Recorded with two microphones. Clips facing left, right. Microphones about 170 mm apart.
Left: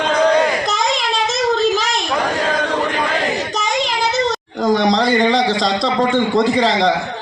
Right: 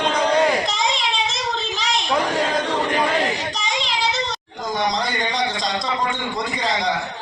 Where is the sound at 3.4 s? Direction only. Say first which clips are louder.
Left 6 dB; 45° left (ahead or behind).